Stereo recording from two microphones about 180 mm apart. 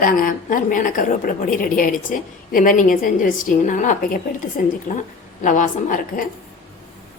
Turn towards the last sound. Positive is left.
turn(degrees=45)  # may be behind; listen again after turning